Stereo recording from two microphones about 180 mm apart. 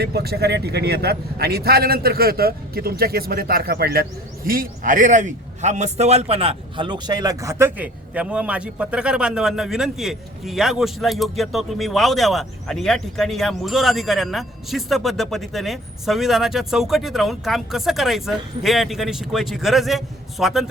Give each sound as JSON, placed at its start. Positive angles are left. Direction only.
{"t": 0.0, "sound": "a man's voice", "side_deg": -60}